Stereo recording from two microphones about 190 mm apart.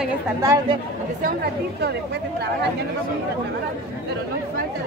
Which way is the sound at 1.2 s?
55° right (ahead or behind).